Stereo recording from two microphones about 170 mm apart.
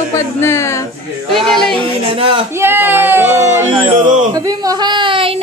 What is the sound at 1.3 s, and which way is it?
Speech, centre (ahead or behind).